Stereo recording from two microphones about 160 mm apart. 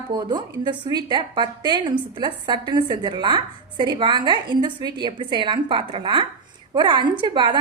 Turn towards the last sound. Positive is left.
turn(degrees=-30)  # may be behind; listen again after turning